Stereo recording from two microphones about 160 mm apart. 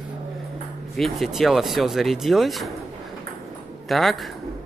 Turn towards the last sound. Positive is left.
turn(degrees=0)  # may be behind; listen again after turning